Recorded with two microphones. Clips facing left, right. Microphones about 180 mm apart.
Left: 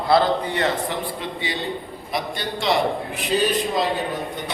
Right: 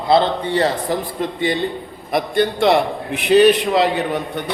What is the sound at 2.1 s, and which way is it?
A man's voice, 55° right (ahead or behind).